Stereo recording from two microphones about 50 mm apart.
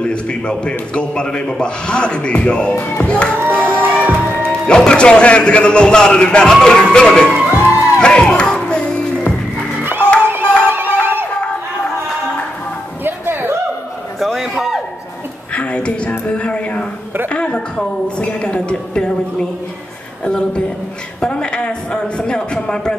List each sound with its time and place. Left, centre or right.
0.0 s speech: centre
3.5 s music: left
4.0 s music: right
4.5 s speech: centre
6.5 s music: centre
7.5 s music: left
8.0 s music: centre
9.8 s music: right
13.0 s a sound: right
14.2 s a sound: centre
15.5 s a sound: left
17.3 s a woman's voice: left
21.2 s a woman's voice: centre